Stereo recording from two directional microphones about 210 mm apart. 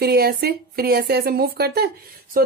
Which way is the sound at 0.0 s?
50° right (ahead or behind).